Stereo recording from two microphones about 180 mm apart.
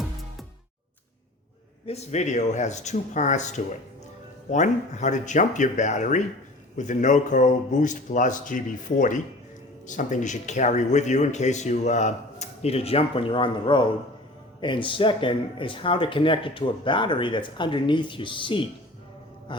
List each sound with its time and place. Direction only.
1.9 s speech: 35° left (ahead or behind)